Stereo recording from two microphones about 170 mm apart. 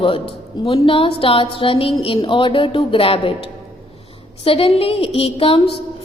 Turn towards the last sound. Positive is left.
turn(degrees=35)  # may be behind; listen again after turning